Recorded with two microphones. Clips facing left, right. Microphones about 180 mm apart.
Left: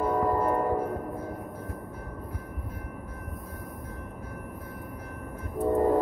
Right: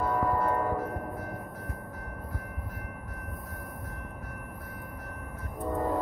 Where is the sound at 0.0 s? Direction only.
20° left (ahead or behind).